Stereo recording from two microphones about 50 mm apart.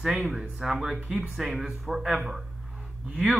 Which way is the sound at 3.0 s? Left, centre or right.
Right.